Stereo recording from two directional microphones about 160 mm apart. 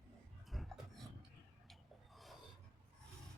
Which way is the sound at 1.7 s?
Centre (ahead or behind).